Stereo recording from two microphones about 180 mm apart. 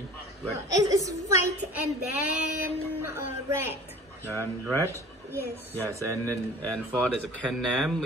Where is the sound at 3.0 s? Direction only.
15° right (ahead or behind).